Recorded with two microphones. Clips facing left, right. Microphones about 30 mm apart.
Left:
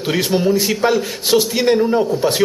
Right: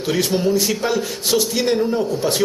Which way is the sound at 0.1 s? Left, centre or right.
Centre.